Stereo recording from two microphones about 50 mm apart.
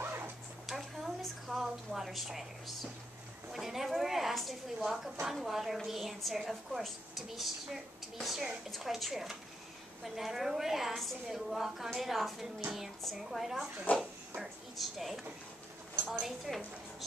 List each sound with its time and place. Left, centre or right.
0.0 s dog: right
0.7 s a sound: centre
5.3 s a woman's voice: centre
13.9 s speech: left
14.4 s a woman's voice: centre